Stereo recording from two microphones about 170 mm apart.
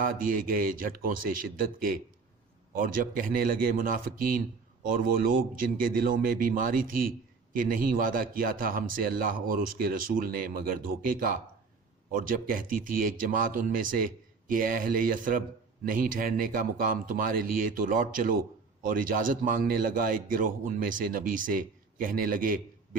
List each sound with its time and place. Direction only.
0.0 s a man's voice: 55° right (ahead or behind)